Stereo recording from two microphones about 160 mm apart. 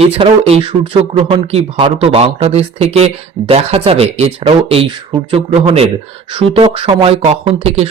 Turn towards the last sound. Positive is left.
turn(degrees=-40)  # may be behind; listen again after turning